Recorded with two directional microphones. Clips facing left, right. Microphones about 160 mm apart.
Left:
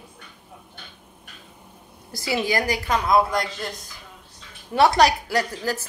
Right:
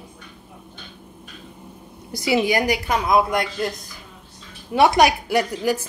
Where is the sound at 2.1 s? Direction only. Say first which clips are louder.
Right 4 dB; 20° right (ahead or behind).